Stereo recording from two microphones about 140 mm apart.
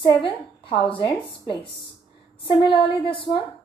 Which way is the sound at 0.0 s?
40° left (ahead or behind).